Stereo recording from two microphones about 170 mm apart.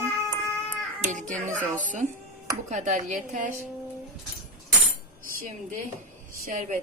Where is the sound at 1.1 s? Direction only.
45° right (ahead or behind).